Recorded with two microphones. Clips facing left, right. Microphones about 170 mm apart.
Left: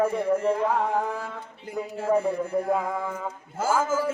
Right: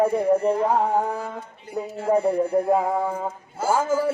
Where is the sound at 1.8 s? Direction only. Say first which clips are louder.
Right 3 dB; 20° right (ahead or behind).